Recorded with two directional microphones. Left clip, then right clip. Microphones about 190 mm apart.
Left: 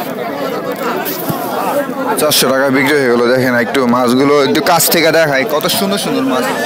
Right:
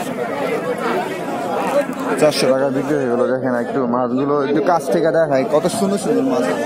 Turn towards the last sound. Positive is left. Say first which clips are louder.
# left 4 dB
turn(degrees=0)  # may be behind; listen again after turning